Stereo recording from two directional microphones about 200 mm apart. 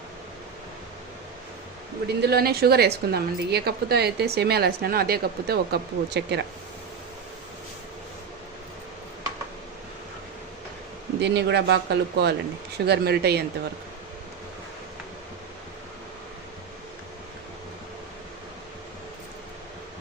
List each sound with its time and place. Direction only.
2.2 s a woman's voice: 50° right (ahead or behind)
11.2 s speech: 60° right (ahead or behind)